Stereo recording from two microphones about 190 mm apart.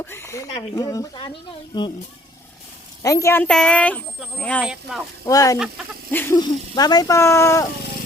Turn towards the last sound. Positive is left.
turn(degrees=15)  # may be behind; listen again after turning